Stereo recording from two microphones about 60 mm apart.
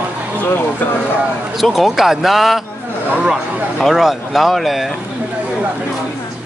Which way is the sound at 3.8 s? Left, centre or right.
Centre.